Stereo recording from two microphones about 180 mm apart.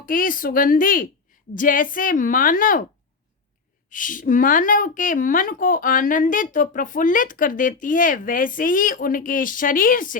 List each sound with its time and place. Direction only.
0.0 s a woman's voice: 50° left (ahead or behind)
3.8 s a woman's voice: 50° left (ahead or behind)